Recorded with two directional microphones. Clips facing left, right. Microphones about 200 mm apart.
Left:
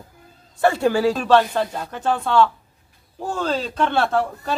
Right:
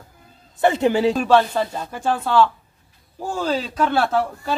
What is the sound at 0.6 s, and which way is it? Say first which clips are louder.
Speech: right 1 dB; 20° right (ahead or behind).